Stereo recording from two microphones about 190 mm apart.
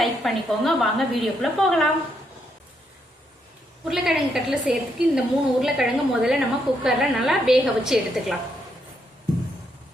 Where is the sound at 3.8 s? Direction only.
Centre (ahead or behind).